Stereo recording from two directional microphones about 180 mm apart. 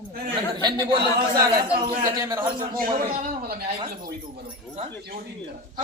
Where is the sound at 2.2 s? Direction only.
20° right (ahead or behind).